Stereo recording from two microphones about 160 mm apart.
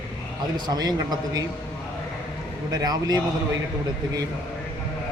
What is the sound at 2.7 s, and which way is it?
Speech, 25° right (ahead or behind).